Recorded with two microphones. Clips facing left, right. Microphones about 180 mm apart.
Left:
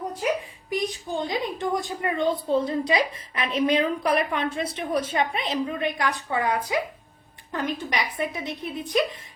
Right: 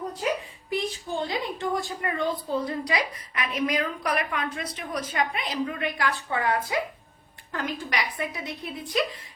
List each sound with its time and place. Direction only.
0.7 s a woman's voice: 20° left (ahead or behind)